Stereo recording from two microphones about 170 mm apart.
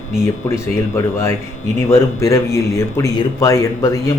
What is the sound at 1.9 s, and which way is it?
Speech, 15° left (ahead or behind).